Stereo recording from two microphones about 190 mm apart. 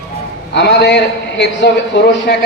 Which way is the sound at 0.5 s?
60° left (ahead or behind).